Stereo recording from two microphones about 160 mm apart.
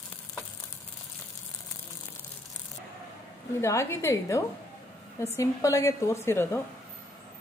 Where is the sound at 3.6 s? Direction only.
15° left (ahead or behind).